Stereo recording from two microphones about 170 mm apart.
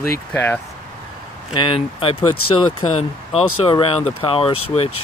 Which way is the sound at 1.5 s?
30° left (ahead or behind).